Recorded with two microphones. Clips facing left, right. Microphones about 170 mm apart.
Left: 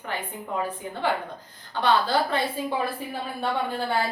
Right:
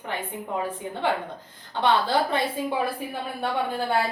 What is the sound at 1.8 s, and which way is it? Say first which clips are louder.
Speech: even; 20° right (ahead or behind).